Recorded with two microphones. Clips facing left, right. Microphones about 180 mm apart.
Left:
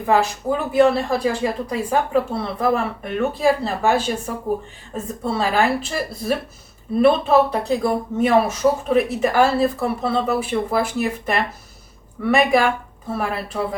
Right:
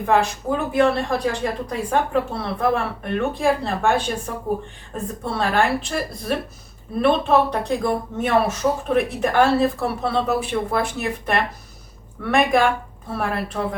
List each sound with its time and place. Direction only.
0.0 s a woman's voice: 5° left (ahead or behind)
5.2 s a woman's voice: 5° left (ahead or behind)